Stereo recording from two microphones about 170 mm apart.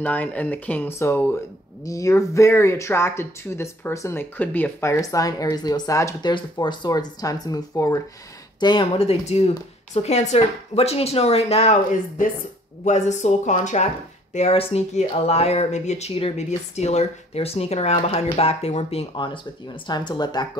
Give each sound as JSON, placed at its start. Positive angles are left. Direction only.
{"t": 0.0, "sound": "speech", "side_deg": 10}